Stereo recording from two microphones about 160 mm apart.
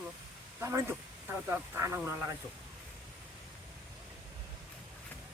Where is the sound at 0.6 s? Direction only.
15° right (ahead or behind).